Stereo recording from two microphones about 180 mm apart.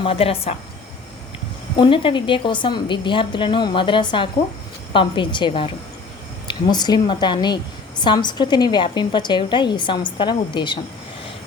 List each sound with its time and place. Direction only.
0.0 s speech: 30° left (ahead or behind)
1.7 s a woman's voice: 30° left (ahead or behind)